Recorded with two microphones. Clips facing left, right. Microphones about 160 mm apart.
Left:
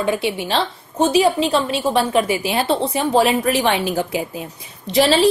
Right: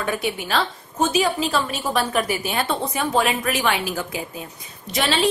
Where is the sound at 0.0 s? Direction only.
25° left (ahead or behind).